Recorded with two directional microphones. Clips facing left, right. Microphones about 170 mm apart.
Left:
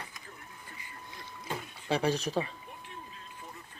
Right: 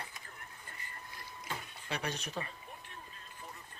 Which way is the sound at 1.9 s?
30° left (ahead or behind).